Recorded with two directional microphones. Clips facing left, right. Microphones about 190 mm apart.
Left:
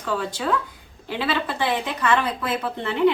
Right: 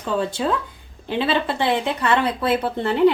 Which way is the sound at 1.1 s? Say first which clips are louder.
Right 4 dB; 25° right (ahead or behind).